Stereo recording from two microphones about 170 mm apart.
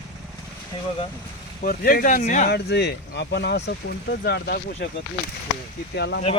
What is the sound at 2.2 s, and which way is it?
Speech, 45° left (ahead or behind).